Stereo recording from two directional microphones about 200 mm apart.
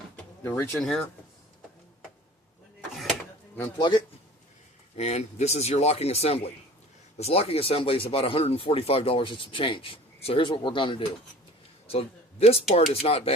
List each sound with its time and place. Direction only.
0.4 s speech: 10° left (ahead or behind)
3.0 s a sound: 5° left (ahead or behind)
3.8 s speech: 25° left (ahead or behind)